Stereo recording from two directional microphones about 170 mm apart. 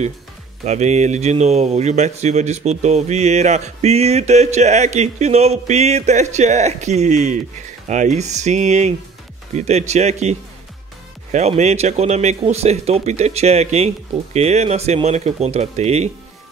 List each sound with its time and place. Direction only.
0.7 s speech: 45° right (ahead or behind)
11.3 s speech: 40° right (ahead or behind)